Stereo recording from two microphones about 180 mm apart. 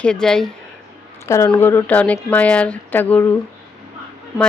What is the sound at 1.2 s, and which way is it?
Speech, 15° left (ahead or behind).